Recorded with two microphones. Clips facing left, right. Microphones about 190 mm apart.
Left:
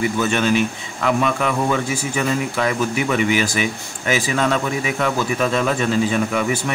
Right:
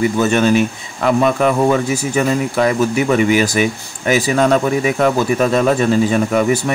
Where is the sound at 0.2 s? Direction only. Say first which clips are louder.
Right 5 dB; 40° right (ahead or behind).